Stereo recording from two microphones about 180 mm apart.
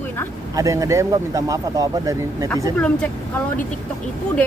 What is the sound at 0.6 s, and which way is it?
Speech, 20° right (ahead or behind).